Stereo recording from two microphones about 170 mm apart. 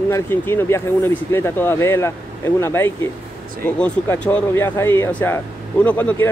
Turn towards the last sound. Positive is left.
turn(degrees=10)  # may be behind; listen again after turning